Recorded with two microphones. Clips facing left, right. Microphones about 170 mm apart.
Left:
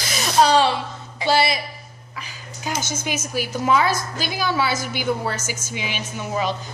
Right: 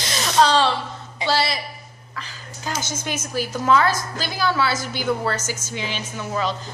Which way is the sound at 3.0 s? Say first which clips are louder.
Even; 10° left (ahead or behind).